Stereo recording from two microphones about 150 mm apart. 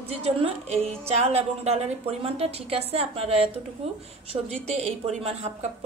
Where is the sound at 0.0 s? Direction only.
40° right (ahead or behind).